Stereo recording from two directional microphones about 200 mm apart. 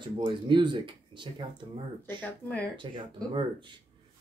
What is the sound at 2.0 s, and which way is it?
Speech, 10° left (ahead or behind).